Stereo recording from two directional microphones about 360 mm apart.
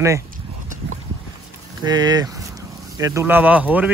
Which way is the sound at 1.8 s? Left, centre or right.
Centre.